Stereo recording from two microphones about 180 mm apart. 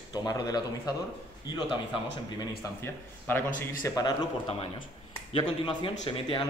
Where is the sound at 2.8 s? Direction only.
10° left (ahead or behind).